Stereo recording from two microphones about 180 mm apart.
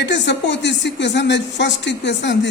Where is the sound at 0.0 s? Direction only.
75° left (ahead or behind).